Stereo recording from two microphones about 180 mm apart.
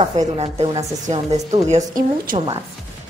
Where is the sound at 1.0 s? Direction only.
40° right (ahead or behind).